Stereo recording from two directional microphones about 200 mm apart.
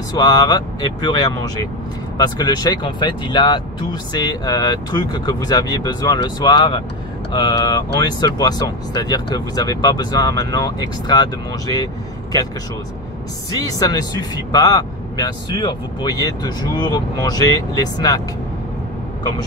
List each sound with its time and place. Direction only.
0.2 s speech: 20° left (ahead or behind)
13.7 s speech: 20° left (ahead or behind)